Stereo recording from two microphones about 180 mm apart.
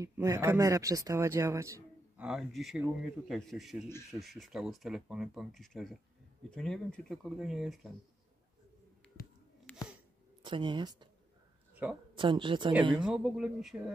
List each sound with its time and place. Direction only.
0.0 s speech: 20° right (ahead or behind)
2.2 s speech: centre (ahead or behind)
9.7 s a sound: 10° left (ahead or behind)
10.4 s speech: 25° right (ahead or behind)
11.7 s a sound: 10° right (ahead or behind)
12.2 s speech: 25° right (ahead or behind)
13.0 s speech: 5° right (ahead or behind)